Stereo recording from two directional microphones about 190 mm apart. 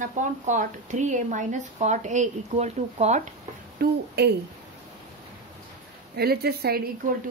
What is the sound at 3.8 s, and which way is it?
Speech, 50° right (ahead or behind).